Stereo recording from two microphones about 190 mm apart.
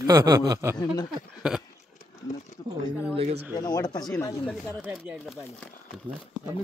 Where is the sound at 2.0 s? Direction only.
40° left (ahead or behind).